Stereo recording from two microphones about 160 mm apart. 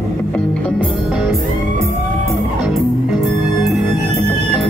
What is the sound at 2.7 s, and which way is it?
Music, centre (ahead or behind).